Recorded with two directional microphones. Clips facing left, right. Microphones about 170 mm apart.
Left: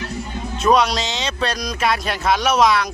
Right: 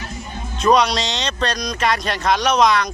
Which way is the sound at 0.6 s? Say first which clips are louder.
Right 1 dB; centre (ahead or behind).